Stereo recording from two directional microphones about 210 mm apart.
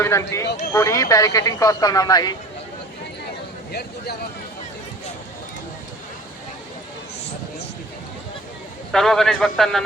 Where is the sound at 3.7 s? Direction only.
50° left (ahead or behind).